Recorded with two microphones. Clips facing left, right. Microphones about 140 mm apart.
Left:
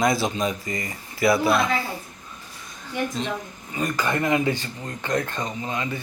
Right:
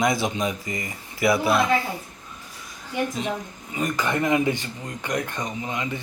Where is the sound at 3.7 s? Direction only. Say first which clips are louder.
Even; 20° right (ahead or behind).